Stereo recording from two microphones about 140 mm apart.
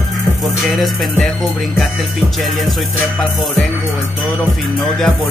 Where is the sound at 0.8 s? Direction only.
Centre (ahead or behind).